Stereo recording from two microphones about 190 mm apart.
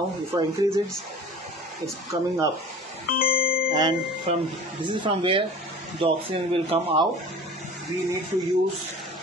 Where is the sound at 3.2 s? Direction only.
50° left (ahead or behind).